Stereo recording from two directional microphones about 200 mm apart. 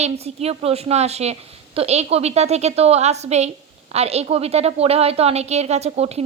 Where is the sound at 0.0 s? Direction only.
30° right (ahead or behind).